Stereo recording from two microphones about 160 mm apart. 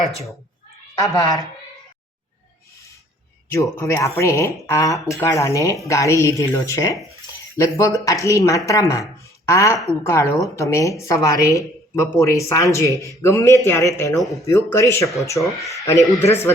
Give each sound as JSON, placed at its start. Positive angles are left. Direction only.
{"t": 1.0, "sound": "a woman's voice", "side_deg": 20}
{"t": 3.8, "sound": "a woman's voice", "side_deg": 20}
{"t": 15.4, "sound": "speech", "side_deg": 0}
{"t": 15.7, "sound": "a man's voice", "side_deg": 20}